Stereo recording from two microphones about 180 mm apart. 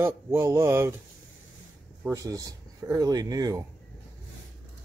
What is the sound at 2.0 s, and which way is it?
Speech, 20° right (ahead or behind).